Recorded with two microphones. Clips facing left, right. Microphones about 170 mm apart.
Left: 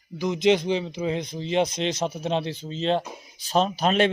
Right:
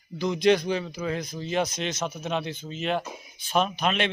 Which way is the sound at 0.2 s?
20° left (ahead or behind).